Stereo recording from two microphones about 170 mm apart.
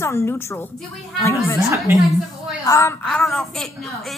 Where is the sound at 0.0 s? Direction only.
15° left (ahead or behind).